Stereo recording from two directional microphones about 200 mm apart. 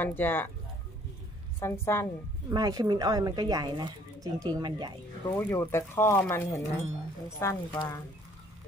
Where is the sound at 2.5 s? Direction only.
20° right (ahead or behind).